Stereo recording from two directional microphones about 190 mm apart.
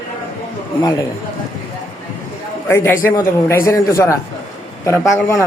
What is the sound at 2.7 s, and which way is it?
Speech, 15° left (ahead or behind).